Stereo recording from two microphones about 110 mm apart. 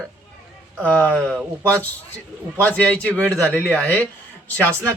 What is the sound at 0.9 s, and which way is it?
Speech, 15° left (ahead or behind).